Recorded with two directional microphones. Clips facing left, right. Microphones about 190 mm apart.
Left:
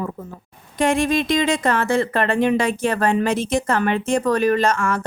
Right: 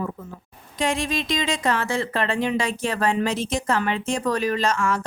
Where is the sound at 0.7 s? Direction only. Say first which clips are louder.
Left 6 dB; 55° left (ahead or behind).